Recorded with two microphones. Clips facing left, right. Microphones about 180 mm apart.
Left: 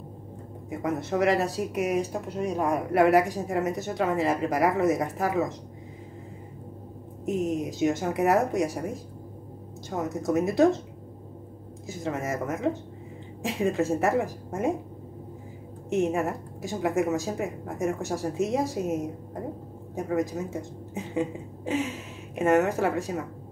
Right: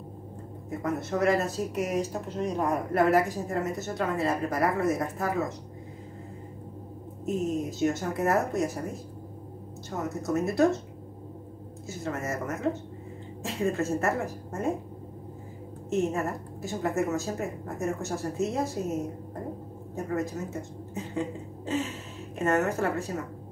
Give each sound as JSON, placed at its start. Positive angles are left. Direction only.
{"t": 0.7, "sound": "speech", "side_deg": 15}
{"t": 7.2, "sound": "speech", "side_deg": 15}
{"t": 11.9, "sound": "speech", "side_deg": 15}
{"t": 15.9, "sound": "speech", "side_deg": 15}
{"t": 20.0, "sound": "speech", "side_deg": 15}